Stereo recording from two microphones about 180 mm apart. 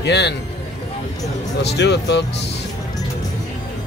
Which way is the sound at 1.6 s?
70° left (ahead or behind).